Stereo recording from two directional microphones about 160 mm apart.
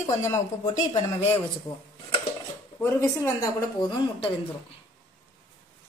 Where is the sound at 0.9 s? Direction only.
40° left (ahead or behind).